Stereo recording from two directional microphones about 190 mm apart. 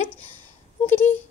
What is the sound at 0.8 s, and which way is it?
Speech, 10° left (ahead or behind).